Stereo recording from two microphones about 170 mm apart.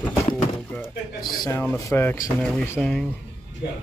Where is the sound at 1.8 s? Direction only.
15° left (ahead or behind).